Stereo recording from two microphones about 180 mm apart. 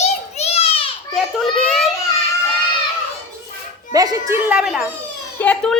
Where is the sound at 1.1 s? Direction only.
Centre (ahead or behind).